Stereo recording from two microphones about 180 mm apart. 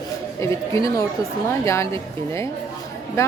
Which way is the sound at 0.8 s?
20° left (ahead or behind).